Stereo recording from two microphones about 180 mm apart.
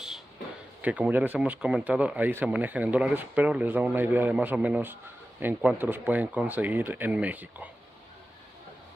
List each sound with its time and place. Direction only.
0.8 s speech: 10° right (ahead or behind)